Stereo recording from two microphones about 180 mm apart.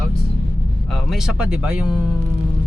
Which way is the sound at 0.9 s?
Centre (ahead or behind).